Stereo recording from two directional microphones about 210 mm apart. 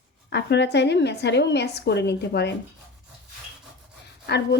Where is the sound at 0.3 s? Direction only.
55° left (ahead or behind).